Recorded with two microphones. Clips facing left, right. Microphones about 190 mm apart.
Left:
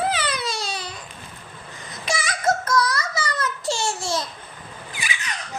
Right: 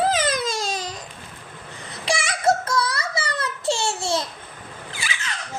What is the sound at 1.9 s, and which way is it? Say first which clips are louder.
Child singing: right 2 dB; 30° right (ahead or behind).